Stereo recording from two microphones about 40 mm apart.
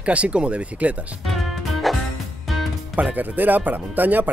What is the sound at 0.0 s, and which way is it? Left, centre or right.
Speech, right.